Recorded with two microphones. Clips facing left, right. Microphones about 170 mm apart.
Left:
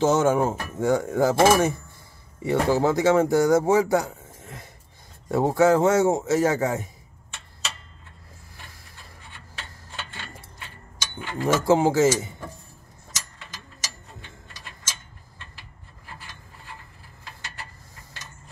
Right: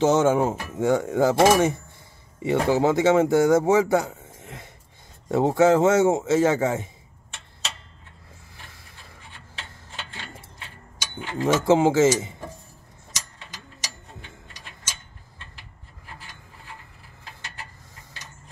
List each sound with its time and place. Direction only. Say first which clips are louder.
0.0 s speech: right 1 dB; 20° right (ahead or behind)
3.9 s a sound: right 1 dB; 20° right (ahead or behind)
5.3 s speech: right 1 dB; 20° right (ahead or behind)
11.1 s speech: right 1 dB; 20° right (ahead or behind)